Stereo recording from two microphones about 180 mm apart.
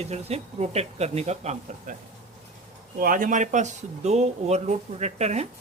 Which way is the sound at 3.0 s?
50° right (ahead or behind).